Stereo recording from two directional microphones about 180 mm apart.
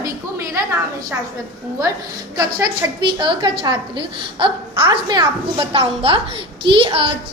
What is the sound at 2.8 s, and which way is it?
A woman's voice, 20° right (ahead or behind).